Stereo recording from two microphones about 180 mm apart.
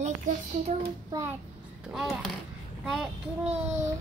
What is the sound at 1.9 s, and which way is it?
Speech, centre (ahead or behind).